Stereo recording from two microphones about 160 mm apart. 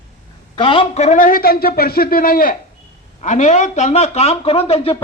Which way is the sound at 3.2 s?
50° left (ahead or behind).